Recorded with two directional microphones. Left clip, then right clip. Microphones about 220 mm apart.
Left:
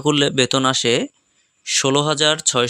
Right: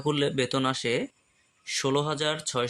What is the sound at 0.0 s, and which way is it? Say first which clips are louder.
Speech: left 10 dB; 35° left (ahead or behind).